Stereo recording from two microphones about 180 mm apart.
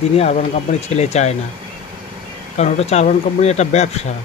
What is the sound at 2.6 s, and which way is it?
Speech, 40° left (ahead or behind).